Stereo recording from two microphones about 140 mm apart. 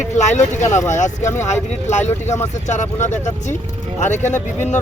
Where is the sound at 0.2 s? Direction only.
55° left (ahead or behind).